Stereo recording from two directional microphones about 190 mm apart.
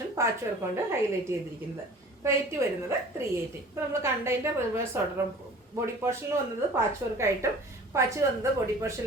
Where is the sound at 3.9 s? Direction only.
15° right (ahead or behind).